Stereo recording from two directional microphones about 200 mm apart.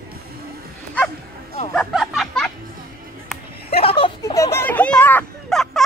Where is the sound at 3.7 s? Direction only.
30° left (ahead or behind); by 5.8 s centre (ahead or behind).